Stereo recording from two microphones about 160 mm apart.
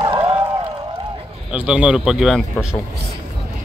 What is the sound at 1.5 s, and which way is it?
Speech, 5° right (ahead or behind).